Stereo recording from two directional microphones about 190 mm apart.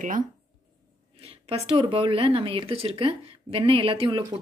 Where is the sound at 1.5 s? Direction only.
30° right (ahead or behind).